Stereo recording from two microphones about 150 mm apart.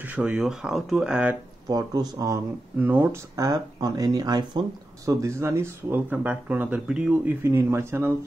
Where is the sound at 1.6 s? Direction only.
25° right (ahead or behind).